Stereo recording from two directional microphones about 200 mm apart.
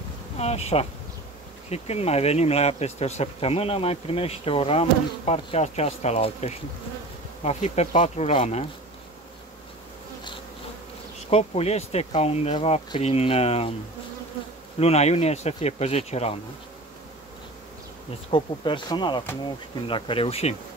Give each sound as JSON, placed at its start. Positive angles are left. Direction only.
{"t": 0.4, "sound": "speech", "side_deg": 30}
{"t": 11.1, "sound": "speech", "side_deg": 30}
{"t": 14.8, "sound": "speech", "side_deg": 30}
{"t": 18.3, "sound": "speech", "side_deg": 25}